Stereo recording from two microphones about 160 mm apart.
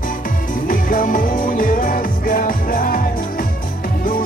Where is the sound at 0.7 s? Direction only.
60° left (ahead or behind).